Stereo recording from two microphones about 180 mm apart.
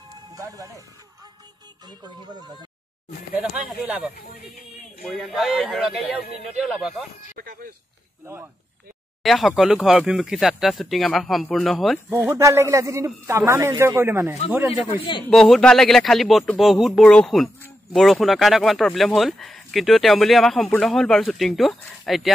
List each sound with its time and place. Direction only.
0.3 s speech: 20° right (ahead or behind)
1.9 s speech: 25° right (ahead or behind)
3.3 s a man's voice: 5° right (ahead or behind)
5.1 s speech: centre (ahead or behind)
7.3 s speech: 55° right (ahead or behind)
9.2 s speech: centre (ahead or behind)
12.1 s a man's voice: 15° right (ahead or behind)
15.2 s speech: centre (ahead or behind)